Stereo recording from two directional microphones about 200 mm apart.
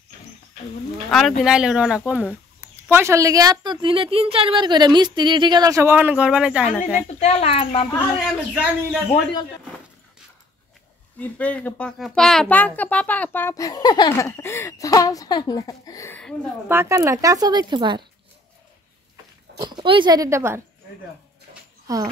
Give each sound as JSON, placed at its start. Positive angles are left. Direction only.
{"t": 1.4, "sound": "a man's voice", "side_deg": -5}
{"t": 7.2, "sound": "speech", "side_deg": 30}
{"t": 8.3, "sound": "a man's voice", "side_deg": -5}
{"t": 11.1, "sound": "speech", "side_deg": 5}
{"t": 16.6, "sound": "speech", "side_deg": -15}
{"t": 19.6, "sound": "speech", "side_deg": -25}
{"t": 21.8, "sound": "speech", "side_deg": -15}